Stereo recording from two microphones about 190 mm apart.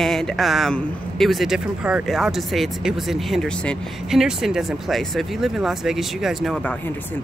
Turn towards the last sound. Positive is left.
turn(degrees=5)  # may be behind; listen again after turning